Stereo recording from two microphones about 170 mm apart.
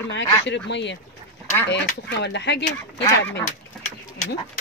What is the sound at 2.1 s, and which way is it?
Speech, 90° left.